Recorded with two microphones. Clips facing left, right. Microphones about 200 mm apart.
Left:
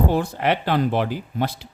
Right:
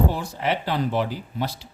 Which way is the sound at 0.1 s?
60° left (ahead or behind).